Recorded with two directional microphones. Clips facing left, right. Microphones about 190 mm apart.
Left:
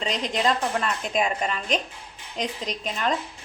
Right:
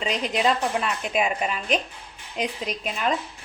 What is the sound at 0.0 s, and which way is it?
A woman's voice, 5° right (ahead or behind).